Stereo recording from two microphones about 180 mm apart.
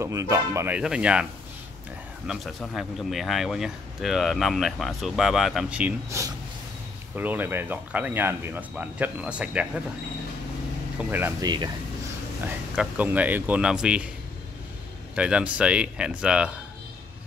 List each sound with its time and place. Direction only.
0.0 s speech: 15° right (ahead or behind)
2.2 s speech: centre (ahead or behind)
11.0 s speech: 10° right (ahead or behind)
11.4 s speech: 25° right (ahead or behind)
12.4 s speech: 10° right (ahead or behind)
15.1 s speech: 5° right (ahead or behind)